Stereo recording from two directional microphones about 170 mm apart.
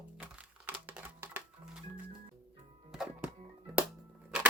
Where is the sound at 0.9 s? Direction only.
10° right (ahead or behind).